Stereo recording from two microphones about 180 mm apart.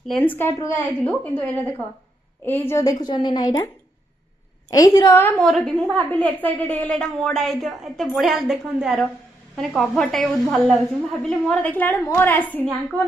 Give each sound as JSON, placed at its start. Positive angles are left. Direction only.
{"t": 0.1, "sound": "a woman's voice", "side_deg": 10}
{"t": 2.5, "sound": "a woman's voice", "side_deg": 10}
{"t": 4.7, "sound": "a woman's voice", "side_deg": 20}
{"t": 5.5, "sound": "a woman's voice", "side_deg": 0}